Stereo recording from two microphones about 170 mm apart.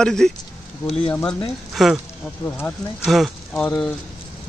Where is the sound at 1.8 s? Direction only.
Centre (ahead or behind).